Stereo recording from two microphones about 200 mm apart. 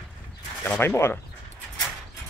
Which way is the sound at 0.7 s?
10° left (ahead or behind).